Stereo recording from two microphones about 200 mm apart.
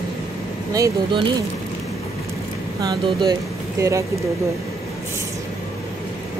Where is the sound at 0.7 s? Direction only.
15° right (ahead or behind).